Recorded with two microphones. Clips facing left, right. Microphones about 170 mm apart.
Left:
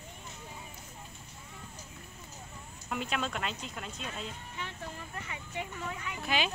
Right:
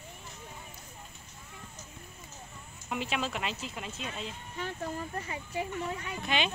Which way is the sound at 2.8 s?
5° right (ahead or behind).